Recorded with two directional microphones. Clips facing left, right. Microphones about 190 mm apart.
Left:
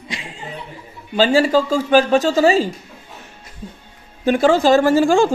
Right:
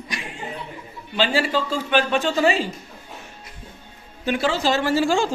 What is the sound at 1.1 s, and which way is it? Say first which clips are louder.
A man's voice: left 7 dB; 40° left (ahead or behind).